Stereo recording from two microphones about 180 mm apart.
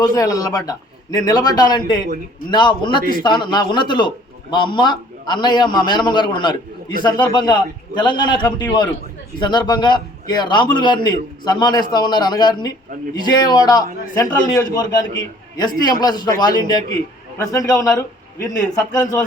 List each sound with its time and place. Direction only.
0.0 s a man's voice: 20° left (ahead or behind)